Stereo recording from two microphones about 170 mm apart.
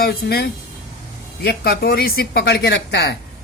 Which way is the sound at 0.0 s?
65° left (ahead or behind).